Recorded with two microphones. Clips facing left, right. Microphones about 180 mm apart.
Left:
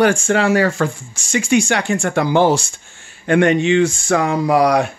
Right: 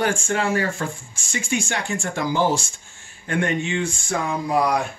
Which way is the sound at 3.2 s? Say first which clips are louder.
Left 10 dB; 85° left.